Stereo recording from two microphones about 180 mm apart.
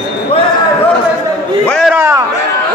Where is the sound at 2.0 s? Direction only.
15° right (ahead or behind).